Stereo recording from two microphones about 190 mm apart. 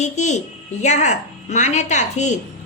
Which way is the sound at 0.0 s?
40° left (ahead or behind).